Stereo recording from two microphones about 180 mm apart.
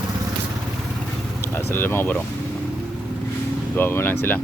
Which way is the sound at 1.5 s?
10° left (ahead or behind).